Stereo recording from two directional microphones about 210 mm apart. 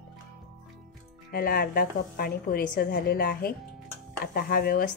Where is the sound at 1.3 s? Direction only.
45° left (ahead or behind).